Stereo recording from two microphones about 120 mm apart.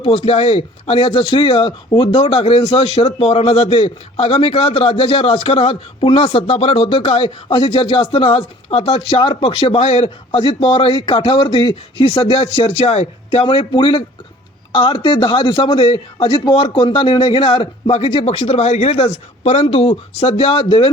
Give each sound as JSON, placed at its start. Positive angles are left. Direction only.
{"t": 0.0, "sound": "a man's voice", "side_deg": 50}